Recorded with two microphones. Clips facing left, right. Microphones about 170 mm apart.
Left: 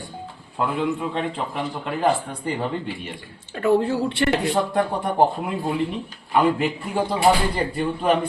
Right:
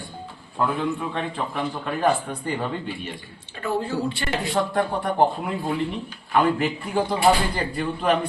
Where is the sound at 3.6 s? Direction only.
65° left (ahead or behind).